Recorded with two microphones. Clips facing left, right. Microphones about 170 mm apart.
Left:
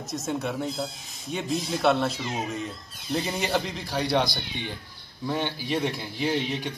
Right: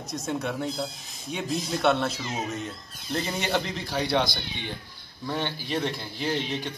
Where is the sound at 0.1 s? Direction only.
Centre (ahead or behind).